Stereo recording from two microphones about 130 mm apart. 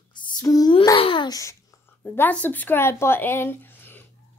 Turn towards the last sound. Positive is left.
turn(degrees=15)  # may be behind; listen again after turning